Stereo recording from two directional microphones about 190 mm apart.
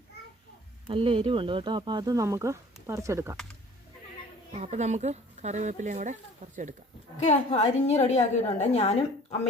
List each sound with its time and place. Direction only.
0.9 s speech: 30° right (ahead or behind)
4.5 s speech: 35° right (ahead or behind)
7.3 s a woman's voice: 35° left (ahead or behind)